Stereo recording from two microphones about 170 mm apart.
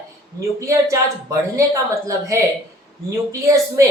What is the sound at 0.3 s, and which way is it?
Speech, 20° right (ahead or behind).